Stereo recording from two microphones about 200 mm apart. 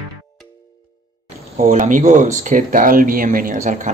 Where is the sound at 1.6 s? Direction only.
35° right (ahead or behind).